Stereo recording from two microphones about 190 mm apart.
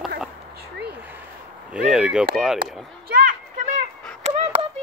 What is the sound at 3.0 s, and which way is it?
Children playing, 55° right (ahead or behind).